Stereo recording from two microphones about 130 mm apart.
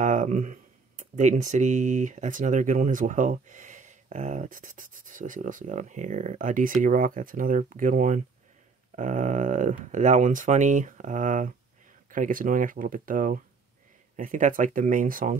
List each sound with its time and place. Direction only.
0.0 s speech: 75° right (ahead or behind)
12.1 s speech: 90° right
14.1 s speech: 80° right